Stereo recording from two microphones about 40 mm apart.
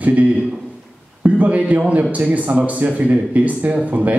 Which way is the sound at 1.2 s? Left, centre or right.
Right.